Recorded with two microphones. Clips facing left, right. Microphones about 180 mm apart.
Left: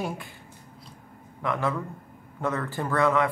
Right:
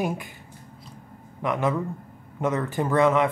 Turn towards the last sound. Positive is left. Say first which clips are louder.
# right 3 dB
turn(degrees=-20)  # may be behind; listen again after turning